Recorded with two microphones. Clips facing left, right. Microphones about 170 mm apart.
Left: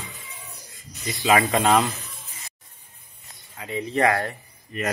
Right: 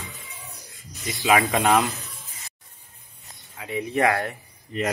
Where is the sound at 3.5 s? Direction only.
15° right (ahead or behind).